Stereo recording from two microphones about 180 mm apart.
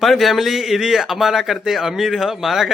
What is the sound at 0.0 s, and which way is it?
A man's voice, centre (ahead or behind).